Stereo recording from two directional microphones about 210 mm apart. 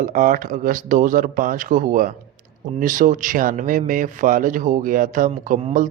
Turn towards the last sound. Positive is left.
turn(degrees=-40)  # may be behind; listen again after turning